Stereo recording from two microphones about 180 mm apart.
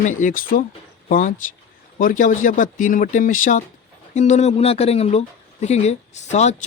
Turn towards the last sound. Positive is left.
turn(degrees=40)  # may be behind; listen again after turning